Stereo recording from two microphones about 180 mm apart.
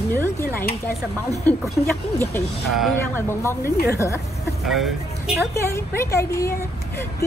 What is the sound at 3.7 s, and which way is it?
Speech, 60° left (ahead or behind).